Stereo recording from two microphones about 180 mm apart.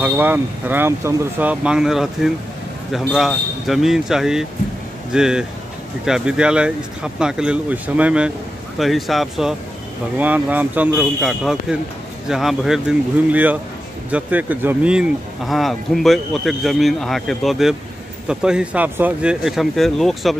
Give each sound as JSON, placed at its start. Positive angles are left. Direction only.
{"t": 0.0, "sound": "speech", "side_deg": -10}